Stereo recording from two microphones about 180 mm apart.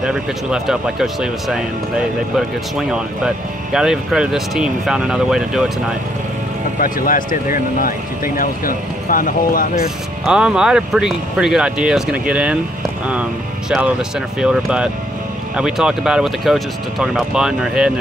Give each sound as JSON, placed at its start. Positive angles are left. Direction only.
{"t": 0.0, "sound": "speech", "side_deg": -5}
{"t": 6.8, "sound": "speech", "side_deg": 50}
{"t": 10.2, "sound": "speech", "side_deg": -5}